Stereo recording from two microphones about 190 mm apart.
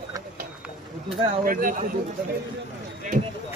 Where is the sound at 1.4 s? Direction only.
45° right (ahead or behind).